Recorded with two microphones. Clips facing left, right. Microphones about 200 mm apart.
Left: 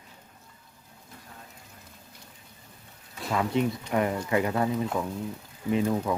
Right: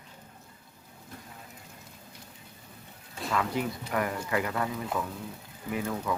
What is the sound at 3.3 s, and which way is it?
Speech, 25° left (ahead or behind).